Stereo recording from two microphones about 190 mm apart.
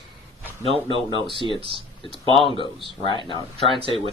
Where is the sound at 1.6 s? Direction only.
30° right (ahead or behind).